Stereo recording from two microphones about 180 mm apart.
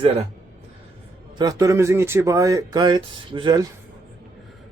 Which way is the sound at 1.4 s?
20° right (ahead or behind).